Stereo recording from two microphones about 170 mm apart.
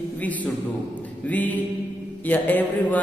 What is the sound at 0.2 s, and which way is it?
Speech, 10° left (ahead or behind).